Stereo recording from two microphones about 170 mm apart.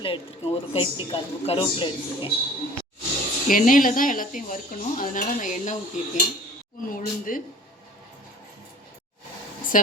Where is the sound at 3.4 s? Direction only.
50° left (ahead or behind).